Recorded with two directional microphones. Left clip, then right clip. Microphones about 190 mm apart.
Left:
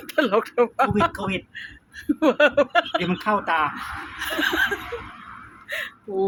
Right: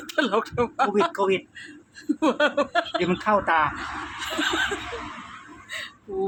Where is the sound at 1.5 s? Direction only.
15° left (ahead or behind); by 3.7 s 5° right (ahead or behind).